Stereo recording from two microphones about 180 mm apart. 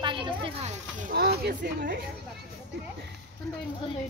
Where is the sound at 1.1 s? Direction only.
60° right (ahead or behind).